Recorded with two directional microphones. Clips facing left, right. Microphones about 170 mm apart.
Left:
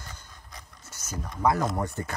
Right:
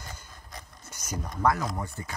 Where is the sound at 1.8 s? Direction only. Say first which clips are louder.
Left 5 dB; 65° left (ahead or behind).